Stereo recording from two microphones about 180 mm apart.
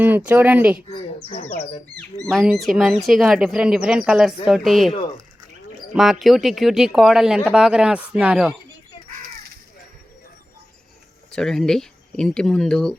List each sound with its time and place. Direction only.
0.0 s speech: 10° right (ahead or behind)
1.3 s speech: 40° left (ahead or behind)
2.2 s speech: centre (ahead or behind)
11.3 s speech: 5° left (ahead or behind)